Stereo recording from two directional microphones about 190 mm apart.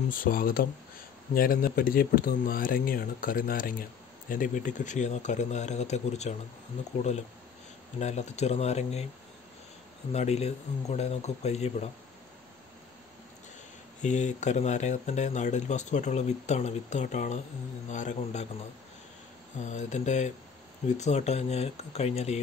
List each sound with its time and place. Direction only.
0.1 s speech: 50° left (ahead or behind)
8.0 s speech: 35° left (ahead or behind)
10.1 s speech: 35° left (ahead or behind)
14.0 s speech: 40° left (ahead or behind)
19.6 s speech: 40° left (ahead or behind)